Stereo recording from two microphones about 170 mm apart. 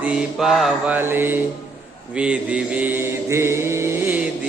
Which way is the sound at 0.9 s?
10° right (ahead or behind).